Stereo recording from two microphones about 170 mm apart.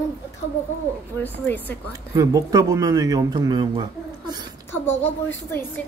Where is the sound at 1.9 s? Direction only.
20° right (ahead or behind).